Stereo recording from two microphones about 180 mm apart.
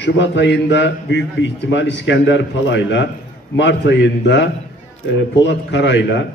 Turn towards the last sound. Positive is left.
turn(degrees=75)  # may be behind; listen again after turning